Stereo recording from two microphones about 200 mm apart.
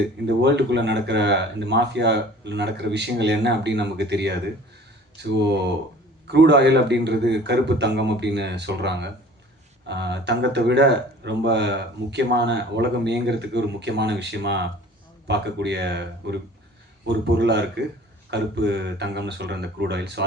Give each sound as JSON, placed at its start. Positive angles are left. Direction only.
{"t": 0.3, "sound": "speech", "side_deg": -60}